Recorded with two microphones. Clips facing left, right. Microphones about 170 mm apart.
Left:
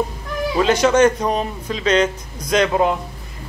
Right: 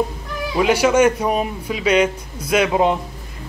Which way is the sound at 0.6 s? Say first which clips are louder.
Even; 10° right (ahead or behind).